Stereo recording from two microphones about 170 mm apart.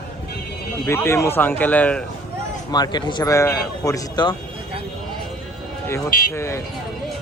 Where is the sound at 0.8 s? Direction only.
15° left (ahead or behind).